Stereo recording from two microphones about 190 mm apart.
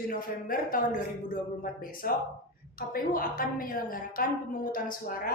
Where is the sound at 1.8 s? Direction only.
50° left (ahead or behind).